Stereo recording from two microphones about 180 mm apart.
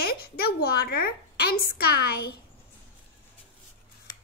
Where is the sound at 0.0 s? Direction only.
60° left (ahead or behind).